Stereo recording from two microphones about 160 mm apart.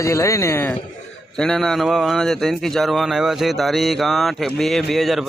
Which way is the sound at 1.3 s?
5° left (ahead or behind).